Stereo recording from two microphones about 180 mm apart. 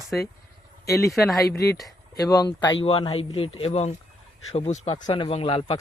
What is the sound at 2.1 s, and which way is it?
Speech, 20° left (ahead or behind).